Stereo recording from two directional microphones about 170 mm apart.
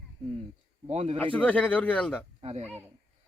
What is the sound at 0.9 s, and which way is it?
Speech, 40° right (ahead or behind).